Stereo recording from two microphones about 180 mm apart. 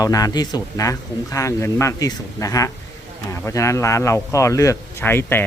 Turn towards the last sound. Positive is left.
turn(degrees=10)  # may be behind; listen again after turning